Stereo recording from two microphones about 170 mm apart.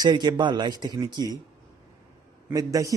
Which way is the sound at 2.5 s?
20° right (ahead or behind).